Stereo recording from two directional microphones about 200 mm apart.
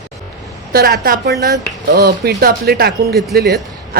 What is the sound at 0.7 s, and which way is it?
Speech, 45° right (ahead or behind).